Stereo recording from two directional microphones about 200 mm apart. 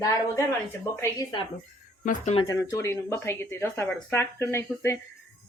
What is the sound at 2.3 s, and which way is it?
Speech, 20° left (ahead or behind).